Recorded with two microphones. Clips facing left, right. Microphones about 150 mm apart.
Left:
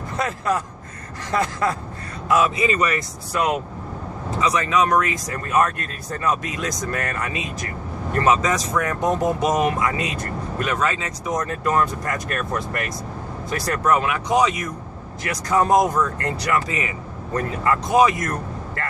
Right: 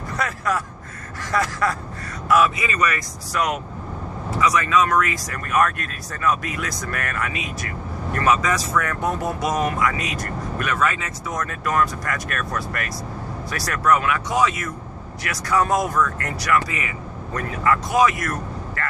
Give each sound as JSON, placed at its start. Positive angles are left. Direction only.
{"t": 1.3, "sound": "speech", "side_deg": 20}